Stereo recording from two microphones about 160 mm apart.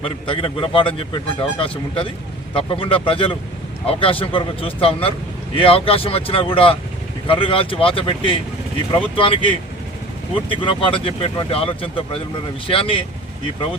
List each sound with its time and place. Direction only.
0.3 s speech: 35° left (ahead or behind)